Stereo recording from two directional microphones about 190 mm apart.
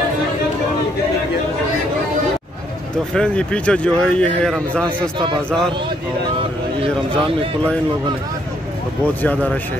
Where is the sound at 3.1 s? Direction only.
5° left (ahead or behind).